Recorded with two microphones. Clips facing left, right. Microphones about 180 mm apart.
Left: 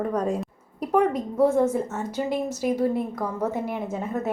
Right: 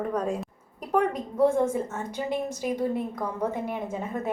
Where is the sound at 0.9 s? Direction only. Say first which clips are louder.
Left 3 dB; 5° left (ahead or behind).